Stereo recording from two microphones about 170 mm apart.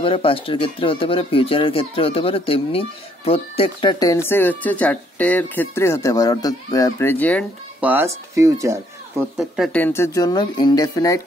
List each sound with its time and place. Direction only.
0.0 s speech: 30° left (ahead or behind); by 7.4 s 10° left (ahead or behind)
7.8 s speech: 10° right (ahead or behind)
9.4 s speech: 5° left (ahead or behind); by 11.2 s 20° left (ahead or behind)